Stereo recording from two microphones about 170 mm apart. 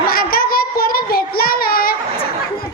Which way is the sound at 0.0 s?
60° left (ahead or behind).